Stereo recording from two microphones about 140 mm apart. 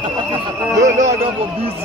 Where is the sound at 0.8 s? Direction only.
60° right (ahead or behind).